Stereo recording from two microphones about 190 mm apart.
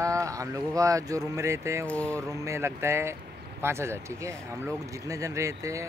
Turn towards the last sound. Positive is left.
turn(degrees=-15)  # may be behind; listen again after turning